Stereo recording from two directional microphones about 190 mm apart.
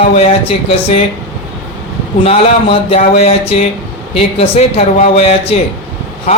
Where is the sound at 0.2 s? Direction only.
35° left (ahead or behind).